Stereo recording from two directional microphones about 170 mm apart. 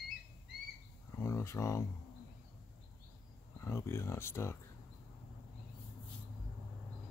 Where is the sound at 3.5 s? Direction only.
15° left (ahead or behind).